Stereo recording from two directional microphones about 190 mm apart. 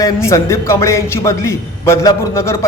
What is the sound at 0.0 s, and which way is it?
A man's voice, 15° left (ahead or behind).